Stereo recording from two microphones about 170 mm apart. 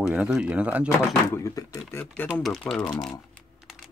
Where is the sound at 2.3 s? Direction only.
Centre (ahead or behind).